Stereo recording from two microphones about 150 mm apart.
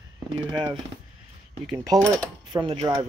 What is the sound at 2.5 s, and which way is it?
Speech, 35° right (ahead or behind).